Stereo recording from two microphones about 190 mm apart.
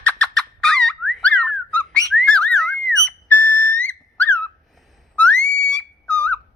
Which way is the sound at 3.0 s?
5° left (ahead or behind).